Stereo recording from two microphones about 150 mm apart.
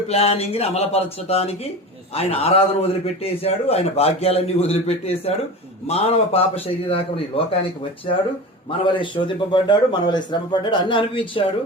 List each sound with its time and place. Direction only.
0.1 s a man's voice: 40° left (ahead or behind)
8.8 s a man's voice: 35° left (ahead or behind)